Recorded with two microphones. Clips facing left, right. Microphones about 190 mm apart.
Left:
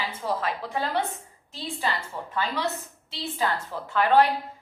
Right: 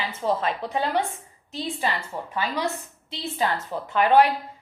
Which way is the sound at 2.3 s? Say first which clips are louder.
Right 1 dB; 15° right (ahead or behind).